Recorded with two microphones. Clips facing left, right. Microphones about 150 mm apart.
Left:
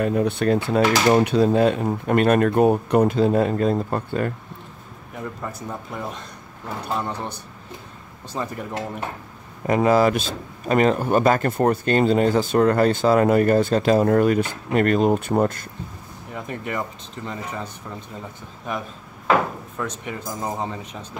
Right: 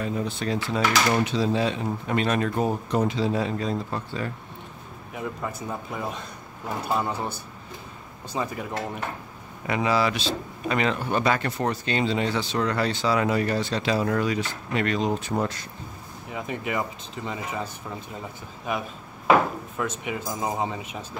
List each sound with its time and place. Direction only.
0.0 s speech: 60° left (ahead or behind)
5.1 s speech: 5° right (ahead or behind)
9.7 s speech: 45° left (ahead or behind)
16.3 s speech: 5° right (ahead or behind)
18.7 s a sound: 5° right (ahead or behind)
19.8 s speech: 5° right (ahead or behind)